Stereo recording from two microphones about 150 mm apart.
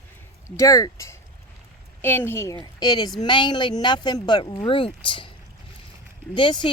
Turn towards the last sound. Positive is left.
turn(degrees=35)  # may be behind; listen again after turning